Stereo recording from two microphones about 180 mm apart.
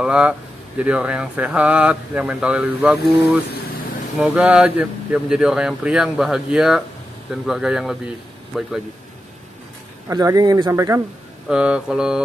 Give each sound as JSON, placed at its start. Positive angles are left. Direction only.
{"t": 0.0, "sound": "speech", "side_deg": -5}
{"t": 10.0, "sound": "speech", "side_deg": -20}
{"t": 11.4, "sound": "speech", "side_deg": -5}